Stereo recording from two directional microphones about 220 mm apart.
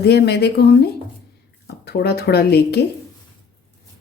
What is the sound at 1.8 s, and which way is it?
A woman's voice, 45° left (ahead or behind).